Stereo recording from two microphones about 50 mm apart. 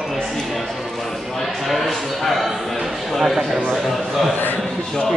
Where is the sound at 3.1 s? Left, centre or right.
Centre.